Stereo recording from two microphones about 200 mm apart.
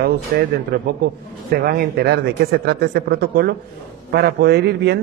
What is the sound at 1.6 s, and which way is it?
A man's voice, 50° right (ahead or behind).